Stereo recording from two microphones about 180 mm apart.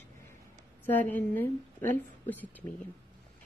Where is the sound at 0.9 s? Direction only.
10° left (ahead or behind).